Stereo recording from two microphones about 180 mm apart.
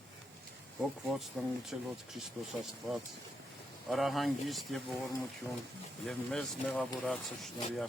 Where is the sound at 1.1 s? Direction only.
Centre (ahead or behind).